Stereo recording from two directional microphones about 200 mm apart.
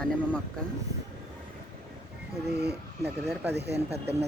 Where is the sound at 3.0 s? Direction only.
10° right (ahead or behind).